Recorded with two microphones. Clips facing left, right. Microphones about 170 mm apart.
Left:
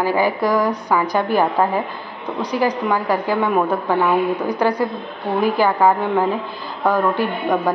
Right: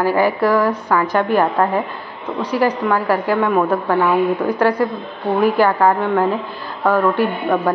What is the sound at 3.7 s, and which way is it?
Speech, 10° left (ahead or behind).